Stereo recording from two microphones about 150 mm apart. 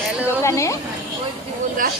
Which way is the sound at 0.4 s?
20° left (ahead or behind).